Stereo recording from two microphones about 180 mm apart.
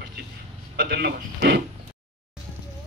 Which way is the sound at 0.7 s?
65° right (ahead or behind).